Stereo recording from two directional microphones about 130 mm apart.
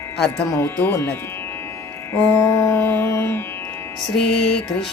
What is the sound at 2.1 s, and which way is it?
Music, 20° left (ahead or behind).